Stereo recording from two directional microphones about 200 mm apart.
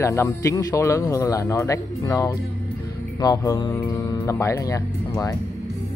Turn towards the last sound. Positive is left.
turn(degrees=15)  # may be behind; listen again after turning